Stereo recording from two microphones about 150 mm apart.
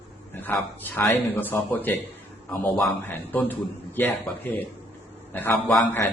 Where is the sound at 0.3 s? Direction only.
10° left (ahead or behind).